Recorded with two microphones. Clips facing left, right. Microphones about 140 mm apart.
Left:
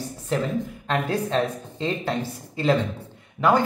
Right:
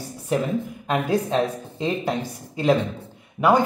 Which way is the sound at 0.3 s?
15° right (ahead or behind).